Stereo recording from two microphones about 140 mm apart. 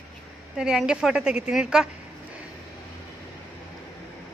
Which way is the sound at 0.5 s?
5° right (ahead or behind).